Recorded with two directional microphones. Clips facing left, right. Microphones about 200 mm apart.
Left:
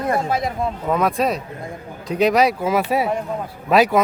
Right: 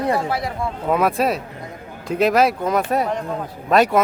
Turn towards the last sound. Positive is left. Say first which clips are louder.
# even
turn(degrees=0)  # may be behind; listen again after turning